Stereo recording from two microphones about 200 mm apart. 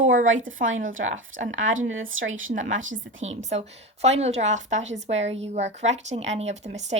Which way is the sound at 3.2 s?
35° right (ahead or behind).